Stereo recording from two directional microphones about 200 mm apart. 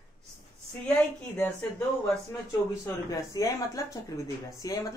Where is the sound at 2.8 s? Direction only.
15° left (ahead or behind).